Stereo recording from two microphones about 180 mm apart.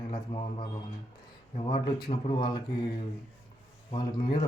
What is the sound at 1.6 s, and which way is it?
Speech, 25° left (ahead or behind).